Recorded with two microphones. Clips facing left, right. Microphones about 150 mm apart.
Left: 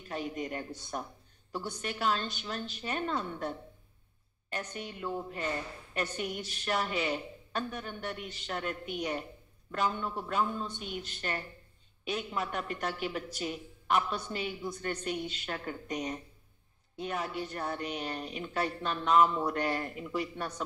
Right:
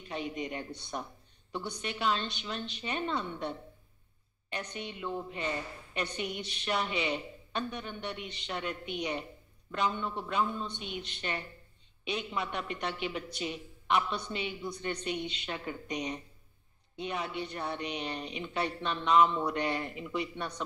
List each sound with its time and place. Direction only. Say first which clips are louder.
0.1 s a man's voice: even; centre (ahead or behind)
8.2 s a woman's voice: even; 45° left (ahead or behind)
8.5 s a man's voice: left 1 dB; centre (ahead or behind)
10.8 s a woman's voice: left 1 dB; 45° left (ahead or behind)
12.1 s a man's voice: even; 5° left (ahead or behind)